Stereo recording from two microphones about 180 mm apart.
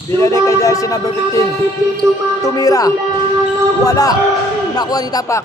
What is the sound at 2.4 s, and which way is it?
A man's voice, 20° left (ahead or behind).